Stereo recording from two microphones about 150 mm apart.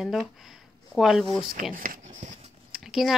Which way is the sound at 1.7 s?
65° right (ahead or behind).